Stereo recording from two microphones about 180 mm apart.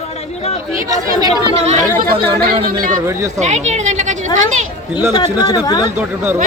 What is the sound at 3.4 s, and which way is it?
Speech, 40° right (ahead or behind).